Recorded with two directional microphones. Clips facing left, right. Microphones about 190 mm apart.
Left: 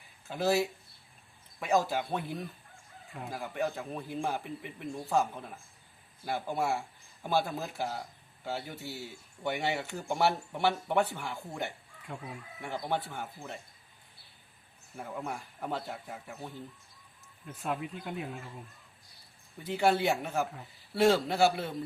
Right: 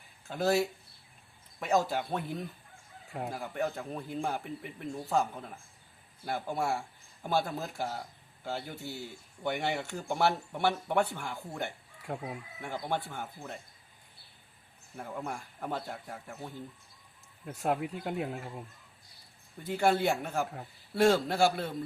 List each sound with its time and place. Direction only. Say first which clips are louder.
0.3 s speech: even; centre (ahead or behind)
12.1 s speech: right 5 dB; 55° right (ahead or behind)
12.6 s speech: left 1 dB; centre (ahead or behind)
14.9 s speech: even; centre (ahead or behind)
17.4 s speech: right 4 dB; 60° right (ahead or behind)
19.7 s speech: even; centre (ahead or behind)